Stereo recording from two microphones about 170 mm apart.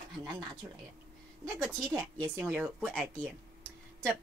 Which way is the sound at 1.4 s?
5° left (ahead or behind).